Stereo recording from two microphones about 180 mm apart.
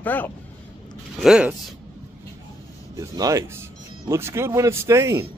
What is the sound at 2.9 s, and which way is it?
Speech, 20° right (ahead or behind).